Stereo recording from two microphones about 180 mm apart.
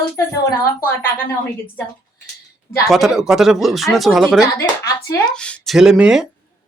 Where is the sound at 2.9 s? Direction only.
Centre (ahead or behind).